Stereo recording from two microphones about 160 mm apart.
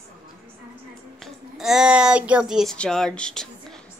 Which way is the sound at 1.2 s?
5° right (ahead or behind).